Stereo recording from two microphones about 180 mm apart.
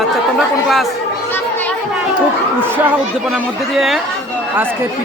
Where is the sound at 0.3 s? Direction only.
Centre (ahead or behind).